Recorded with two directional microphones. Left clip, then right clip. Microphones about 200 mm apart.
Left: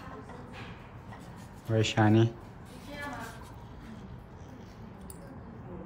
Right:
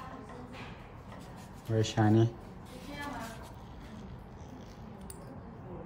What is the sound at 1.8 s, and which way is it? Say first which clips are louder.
Speech: left 3 dB; 15° right (ahead or behind).